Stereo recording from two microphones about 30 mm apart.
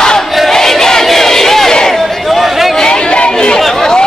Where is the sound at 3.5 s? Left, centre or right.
Centre.